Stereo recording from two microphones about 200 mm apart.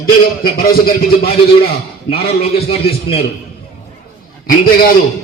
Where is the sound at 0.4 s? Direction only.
50° left (ahead or behind).